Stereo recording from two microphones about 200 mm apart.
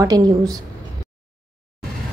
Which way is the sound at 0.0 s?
20° right (ahead or behind).